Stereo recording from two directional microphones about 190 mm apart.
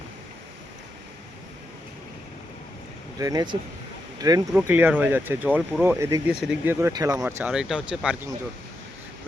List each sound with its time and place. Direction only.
3.2 s speech: 20° right (ahead or behind)